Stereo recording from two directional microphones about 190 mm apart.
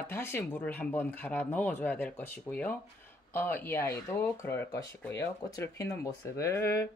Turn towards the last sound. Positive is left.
turn(degrees=15)  # may be behind; listen again after turning